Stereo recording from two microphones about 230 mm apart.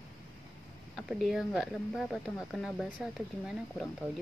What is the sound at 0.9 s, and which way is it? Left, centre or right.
Speech, centre.